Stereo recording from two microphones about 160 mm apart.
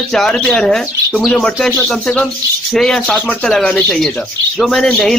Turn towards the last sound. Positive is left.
turn(degrees=5)  # may be behind; listen again after turning